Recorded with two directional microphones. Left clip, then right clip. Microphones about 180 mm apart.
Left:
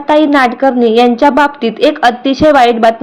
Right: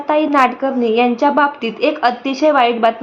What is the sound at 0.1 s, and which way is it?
A woman's voice, 25° left (ahead or behind).